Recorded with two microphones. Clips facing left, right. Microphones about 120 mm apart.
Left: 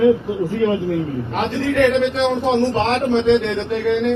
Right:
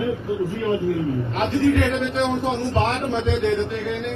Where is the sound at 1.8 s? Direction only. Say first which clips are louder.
Left 6 dB; 80° left.